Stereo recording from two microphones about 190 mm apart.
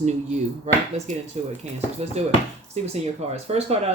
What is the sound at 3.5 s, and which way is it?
Speech, 30° right (ahead or behind).